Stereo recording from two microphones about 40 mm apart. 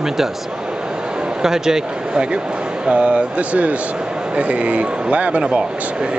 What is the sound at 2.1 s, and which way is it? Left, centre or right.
Speech, right.